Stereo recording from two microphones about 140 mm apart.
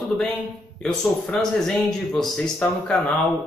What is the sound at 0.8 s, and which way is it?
Speech, 5° left (ahead or behind).